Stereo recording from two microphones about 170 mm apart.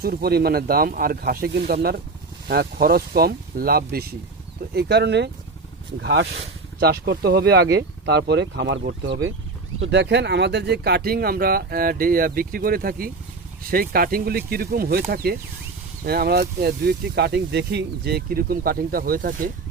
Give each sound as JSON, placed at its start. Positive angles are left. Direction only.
{"t": 0.0, "sound": "speech", "side_deg": -65}
{"t": 6.7, "sound": "speech", "side_deg": -75}
{"t": 7.8, "sound": "speech", "side_deg": -90}
{"t": 8.8, "sound": "speech", "side_deg": -70}
{"t": 9.8, "sound": "speech", "side_deg": -90}